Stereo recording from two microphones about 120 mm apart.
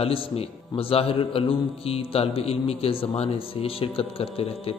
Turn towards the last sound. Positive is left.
turn(degrees=55)  # may be behind; listen again after turning